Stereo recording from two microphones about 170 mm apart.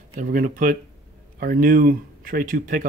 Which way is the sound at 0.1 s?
55° right (ahead or behind).